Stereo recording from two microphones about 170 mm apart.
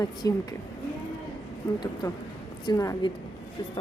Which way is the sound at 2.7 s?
20° left (ahead or behind).